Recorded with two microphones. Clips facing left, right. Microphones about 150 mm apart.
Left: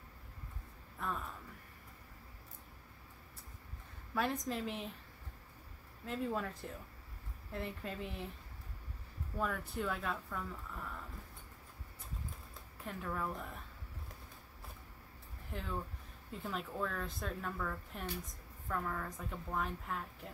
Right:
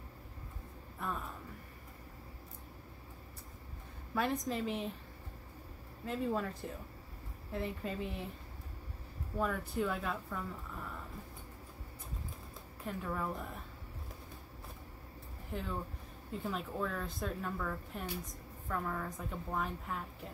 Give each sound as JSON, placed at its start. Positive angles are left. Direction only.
{"t": 0.9, "sound": "speech", "side_deg": -5}
{"t": 4.1, "sound": "speech", "side_deg": 0}
{"t": 6.0, "sound": "speech", "side_deg": 0}
{"t": 9.4, "sound": "speech", "side_deg": 0}
{"t": 12.8, "sound": "speech", "side_deg": -5}
{"t": 15.5, "sound": "speech", "side_deg": 0}